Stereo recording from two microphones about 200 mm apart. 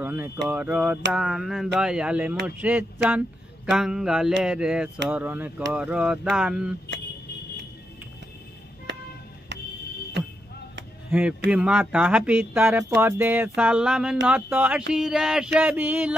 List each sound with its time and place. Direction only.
0.0 s a sound: 10° right (ahead or behind)
0.5 s speech: 5° right (ahead or behind)
9.5 s music: 60° right (ahead or behind)
11.1 s speech: 5° right (ahead or behind)